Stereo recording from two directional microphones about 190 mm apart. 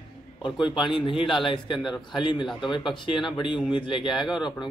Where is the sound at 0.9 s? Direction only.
25° left (ahead or behind).